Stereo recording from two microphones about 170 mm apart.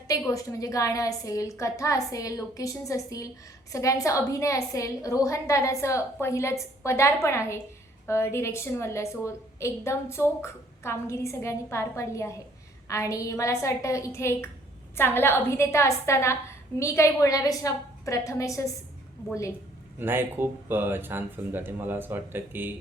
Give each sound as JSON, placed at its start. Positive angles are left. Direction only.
{"t": 0.1, "sound": "a woman's voice", "side_deg": 20}
{"t": 20.0, "sound": "speech", "side_deg": -10}